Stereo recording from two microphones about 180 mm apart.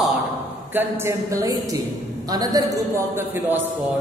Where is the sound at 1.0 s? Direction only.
20° right (ahead or behind).